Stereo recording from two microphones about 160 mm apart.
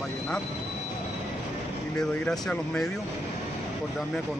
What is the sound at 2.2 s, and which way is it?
Speech, 5° left (ahead or behind).